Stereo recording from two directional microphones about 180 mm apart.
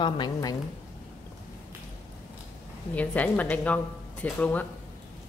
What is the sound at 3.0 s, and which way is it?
A woman's voice, 10° left (ahead or behind).